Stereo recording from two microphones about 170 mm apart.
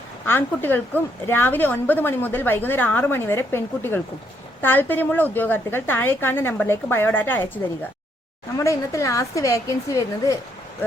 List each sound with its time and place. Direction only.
0.3 s a woman's voice: 10° left (ahead or behind)